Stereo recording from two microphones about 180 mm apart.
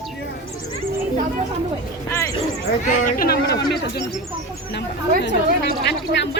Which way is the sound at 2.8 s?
45° left (ahead or behind).